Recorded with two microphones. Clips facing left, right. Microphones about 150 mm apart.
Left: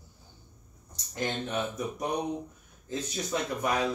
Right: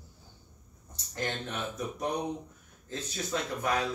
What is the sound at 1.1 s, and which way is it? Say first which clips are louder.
Speech: left 4 dB; 15° left (ahead or behind).